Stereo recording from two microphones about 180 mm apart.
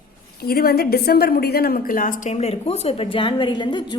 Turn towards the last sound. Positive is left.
turn(degrees=25)  # may be behind; listen again after turning